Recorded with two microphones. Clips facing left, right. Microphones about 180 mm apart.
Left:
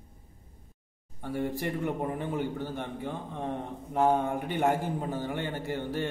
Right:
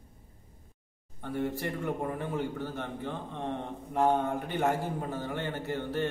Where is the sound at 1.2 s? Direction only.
10° left (ahead or behind).